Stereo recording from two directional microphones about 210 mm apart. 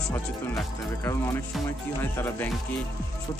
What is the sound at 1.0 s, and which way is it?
Speech, 15° left (ahead or behind).